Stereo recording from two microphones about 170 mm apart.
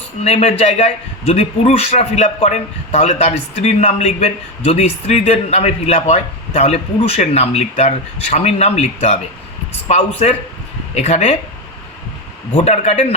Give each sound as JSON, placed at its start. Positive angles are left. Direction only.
{"t": 0.3, "sound": "a man's voice", "side_deg": 40}
{"t": 12.5, "sound": "a man's voice", "side_deg": 40}